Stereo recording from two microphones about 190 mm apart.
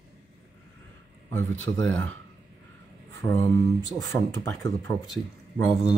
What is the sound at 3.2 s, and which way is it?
Speech, 15° left (ahead or behind).